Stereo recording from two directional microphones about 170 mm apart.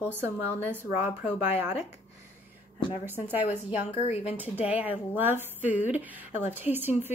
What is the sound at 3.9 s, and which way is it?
Speech, 40° left (ahead or behind).